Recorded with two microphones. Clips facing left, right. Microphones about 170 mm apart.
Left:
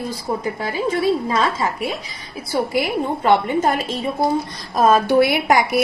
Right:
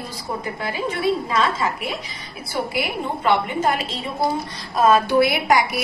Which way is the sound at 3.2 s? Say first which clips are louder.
Left 3 dB; 50° left (ahead or behind).